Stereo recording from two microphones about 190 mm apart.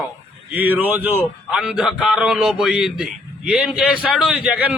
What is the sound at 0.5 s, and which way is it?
A man's voice, 10° right (ahead or behind).